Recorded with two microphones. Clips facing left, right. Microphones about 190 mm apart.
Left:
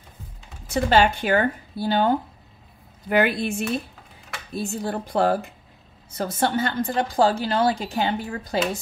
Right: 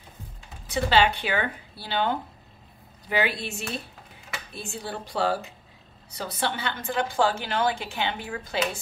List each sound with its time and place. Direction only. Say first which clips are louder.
0.7 s speech: left 3 dB; 45° left (ahead or behind)
4.5 s a woman's voice: left 9 dB; 40° left (ahead or behind)